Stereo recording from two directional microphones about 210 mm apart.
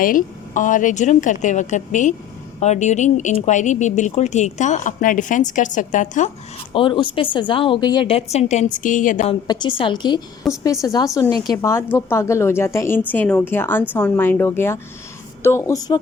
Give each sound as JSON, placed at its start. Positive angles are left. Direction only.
{"t": 0.0, "sound": "speech", "side_deg": 40}
{"t": 6.7, "sound": "a woman's voice", "side_deg": 25}
{"t": 9.5, "sound": "a woman's voice", "side_deg": 20}